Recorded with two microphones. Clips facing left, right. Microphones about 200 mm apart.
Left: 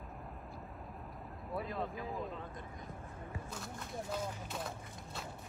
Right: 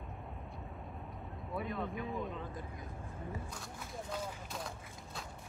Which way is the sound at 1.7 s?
30° left (ahead or behind).